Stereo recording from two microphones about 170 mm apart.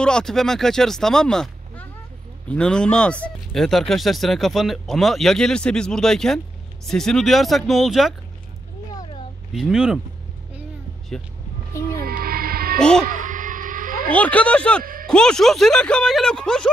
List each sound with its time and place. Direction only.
0.0 s speech: 5° left (ahead or behind)
8.9 s a sound: 30° left (ahead or behind)
9.5 s speech: 5° right (ahead or behind)
12.0 s music: 60° right (ahead or behind)
12.7 s speech: 5° left (ahead or behind)
13.0 s a sound: 50° right (ahead or behind)
14.1 s speech: 10° left (ahead or behind)
14.8 s a man's voice: 55° right (ahead or behind)
15.0 s speech: 5° left (ahead or behind)